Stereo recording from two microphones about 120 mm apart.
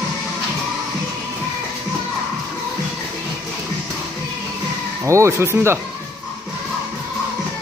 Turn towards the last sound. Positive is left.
turn(degrees=-20)  # may be behind; listen again after turning